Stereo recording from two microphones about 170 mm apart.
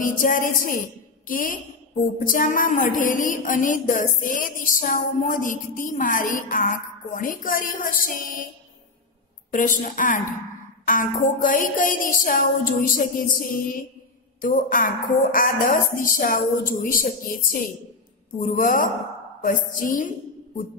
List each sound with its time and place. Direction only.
0.0 s speech: 55° left (ahead or behind)
9.5 s a woman's voice: 50° left (ahead or behind)